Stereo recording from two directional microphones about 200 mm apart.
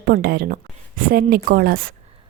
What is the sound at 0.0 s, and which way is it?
Speech, 50° right (ahead or behind).